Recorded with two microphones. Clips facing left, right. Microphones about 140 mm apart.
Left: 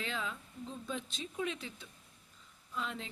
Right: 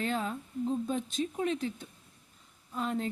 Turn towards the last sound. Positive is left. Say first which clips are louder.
# right 8 dB
turn(degrees=-45)  # may be behind; listen again after turning